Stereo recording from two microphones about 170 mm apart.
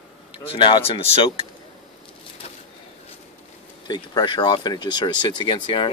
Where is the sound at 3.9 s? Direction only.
25° left (ahead or behind).